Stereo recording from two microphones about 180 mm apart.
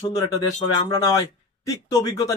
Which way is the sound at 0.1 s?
20° left (ahead or behind).